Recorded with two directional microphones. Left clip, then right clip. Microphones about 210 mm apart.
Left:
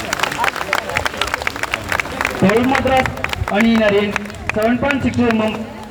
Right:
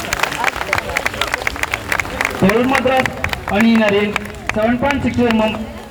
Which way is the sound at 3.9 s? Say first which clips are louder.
Even; 30° right (ahead or behind).